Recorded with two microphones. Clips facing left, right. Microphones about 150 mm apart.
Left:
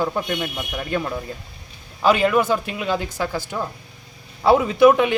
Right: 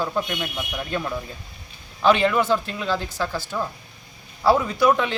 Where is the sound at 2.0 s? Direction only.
10° left (ahead or behind).